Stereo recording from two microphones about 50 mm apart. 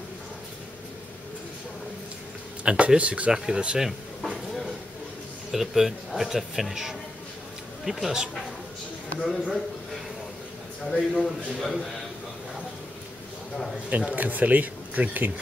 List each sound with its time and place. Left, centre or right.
2.6 s speech: centre
3.3 s speech: centre
4.2 s a sound: centre
5.5 s a man's voice: centre
9.2 s a man's voice: centre
10.9 s a man's voice: centre
13.8 s speech: right